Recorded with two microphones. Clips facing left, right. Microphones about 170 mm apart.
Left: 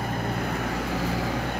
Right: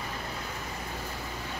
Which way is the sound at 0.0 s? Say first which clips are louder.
Left 9 dB; 55° left (ahead or behind).